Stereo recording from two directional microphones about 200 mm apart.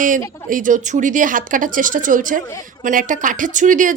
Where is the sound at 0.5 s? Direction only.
40° right (ahead or behind).